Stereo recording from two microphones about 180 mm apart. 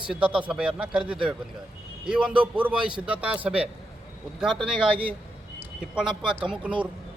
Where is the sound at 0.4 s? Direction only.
5° right (ahead or behind).